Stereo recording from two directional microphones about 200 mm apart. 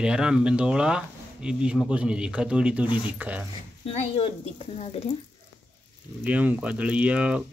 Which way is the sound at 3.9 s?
30° left (ahead or behind).